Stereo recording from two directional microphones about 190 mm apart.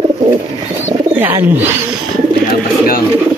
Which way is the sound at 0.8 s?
15° right (ahead or behind).